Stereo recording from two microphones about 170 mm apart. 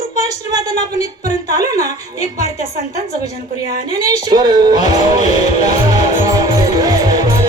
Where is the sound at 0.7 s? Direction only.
45° left (ahead or behind).